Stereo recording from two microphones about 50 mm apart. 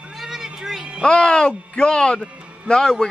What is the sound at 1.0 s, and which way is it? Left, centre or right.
Speech, centre.